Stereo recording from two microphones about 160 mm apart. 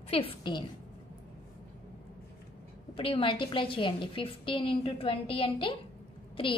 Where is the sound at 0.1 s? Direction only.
30° left (ahead or behind).